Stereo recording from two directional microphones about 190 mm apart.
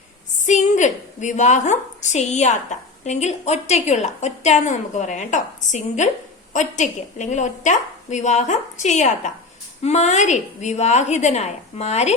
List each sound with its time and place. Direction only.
0.4 s a woman's voice: 40° left (ahead or behind)